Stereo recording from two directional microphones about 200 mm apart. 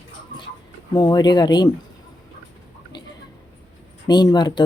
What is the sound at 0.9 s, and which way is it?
Speech, 20° left (ahead or behind).